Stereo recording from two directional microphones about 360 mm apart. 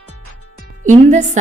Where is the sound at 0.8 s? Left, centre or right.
Centre.